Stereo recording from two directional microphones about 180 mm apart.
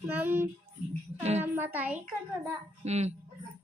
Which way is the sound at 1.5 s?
10° right (ahead or behind).